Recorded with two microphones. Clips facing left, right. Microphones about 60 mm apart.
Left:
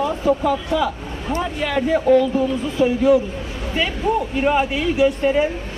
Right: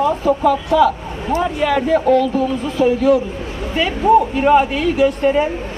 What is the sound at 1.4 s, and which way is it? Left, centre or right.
Speech, centre.